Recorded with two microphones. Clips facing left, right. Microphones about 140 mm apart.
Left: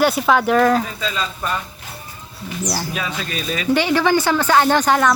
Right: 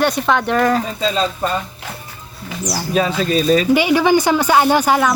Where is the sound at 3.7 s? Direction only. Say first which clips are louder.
Right 3 dB; 15° right (ahead or behind).